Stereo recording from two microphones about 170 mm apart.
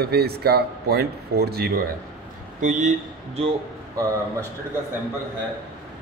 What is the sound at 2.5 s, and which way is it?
Speech, 45° right (ahead or behind).